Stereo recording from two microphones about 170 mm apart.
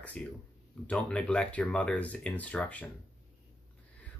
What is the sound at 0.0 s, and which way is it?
Speech, 10° left (ahead or behind).